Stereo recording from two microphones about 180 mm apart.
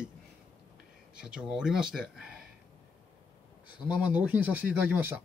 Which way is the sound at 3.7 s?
5° right (ahead or behind).